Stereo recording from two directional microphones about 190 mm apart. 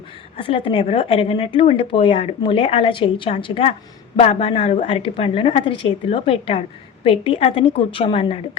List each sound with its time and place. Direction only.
0.3 s a woman's voice: 30° left (ahead or behind)